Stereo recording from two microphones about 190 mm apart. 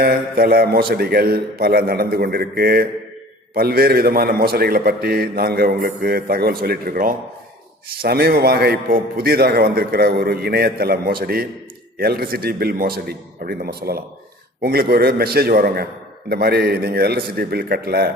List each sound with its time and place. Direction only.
0.0 s a man's voice: 50° right (ahead or behind)